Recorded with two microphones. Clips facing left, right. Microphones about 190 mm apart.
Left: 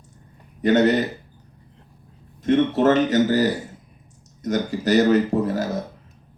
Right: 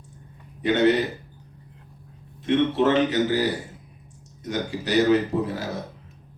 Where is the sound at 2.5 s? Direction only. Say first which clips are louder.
Left 3 dB; 45° left (ahead or behind).